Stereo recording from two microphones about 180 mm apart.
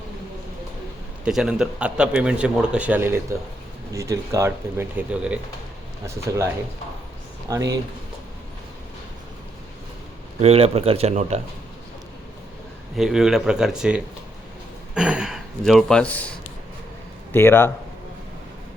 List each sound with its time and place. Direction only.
1.2 s speech: 5° right (ahead or behind)
7.5 s speech: 20° right (ahead or behind)
10.4 s speech: 35° right (ahead or behind)
13.0 s speech: centre (ahead or behind)
17.3 s speech: 15° left (ahead or behind)